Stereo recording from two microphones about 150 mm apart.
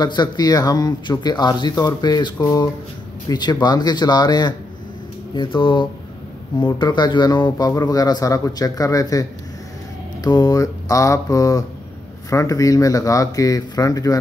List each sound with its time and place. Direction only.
0.0 s speech: 30° left (ahead or behind)